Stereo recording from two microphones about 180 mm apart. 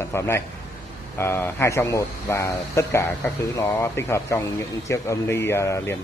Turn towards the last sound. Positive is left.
turn(degrees=15)  # may be behind; listen again after turning